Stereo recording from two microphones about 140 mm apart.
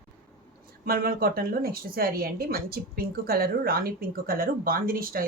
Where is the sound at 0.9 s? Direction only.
90° right.